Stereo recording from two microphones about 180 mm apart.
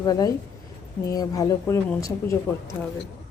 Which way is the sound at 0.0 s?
20° left (ahead or behind).